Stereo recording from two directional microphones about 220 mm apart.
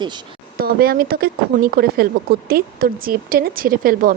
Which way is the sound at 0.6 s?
45° right (ahead or behind).